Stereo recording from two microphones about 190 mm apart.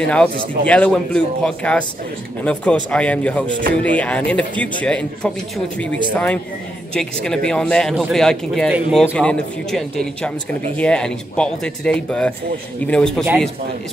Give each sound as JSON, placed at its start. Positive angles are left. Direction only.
{"t": 0.0, "sound": "a man's voice", "side_deg": 5}
{"t": 9.1, "sound": "speech", "side_deg": 5}